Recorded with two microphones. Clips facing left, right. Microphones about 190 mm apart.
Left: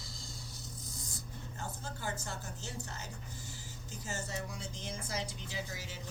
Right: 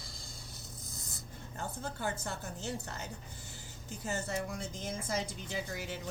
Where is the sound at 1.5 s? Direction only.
60° right (ahead or behind).